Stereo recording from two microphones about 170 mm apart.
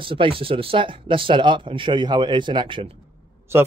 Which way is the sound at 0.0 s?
30° right (ahead or behind).